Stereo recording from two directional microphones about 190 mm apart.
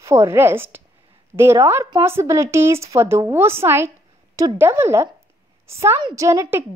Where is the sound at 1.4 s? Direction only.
15° right (ahead or behind).